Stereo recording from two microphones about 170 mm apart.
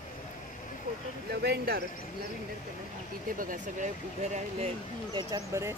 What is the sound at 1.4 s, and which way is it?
Speech, 70° right (ahead or behind).